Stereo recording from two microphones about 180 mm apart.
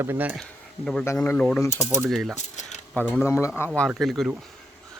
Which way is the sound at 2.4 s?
40° left (ahead or behind).